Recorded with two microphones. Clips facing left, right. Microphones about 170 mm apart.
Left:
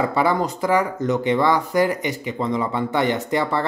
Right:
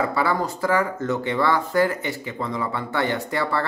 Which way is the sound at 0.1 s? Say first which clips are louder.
Left 3 dB; 20° left (ahead or behind).